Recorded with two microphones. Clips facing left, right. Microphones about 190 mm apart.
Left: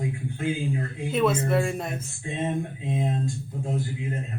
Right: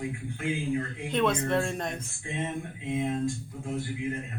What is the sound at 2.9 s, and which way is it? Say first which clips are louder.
Speech: left 1 dB; 35° left (ahead or behind).